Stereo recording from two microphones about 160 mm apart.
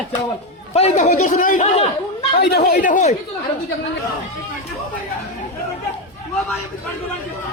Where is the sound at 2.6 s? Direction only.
55° left (ahead or behind).